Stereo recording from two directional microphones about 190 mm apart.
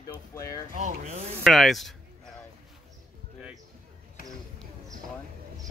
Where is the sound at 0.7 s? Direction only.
40° right (ahead or behind).